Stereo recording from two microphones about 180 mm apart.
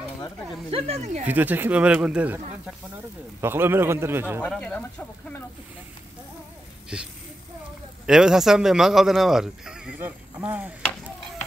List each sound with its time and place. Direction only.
0.7 s speech: 35° right (ahead or behind)
1.2 s speech: 10° right (ahead or behind)
4.4 s speech: 5° left (ahead or behind)
6.9 s speech: 5° right (ahead or behind)
8.1 s speech: 5° right (ahead or behind)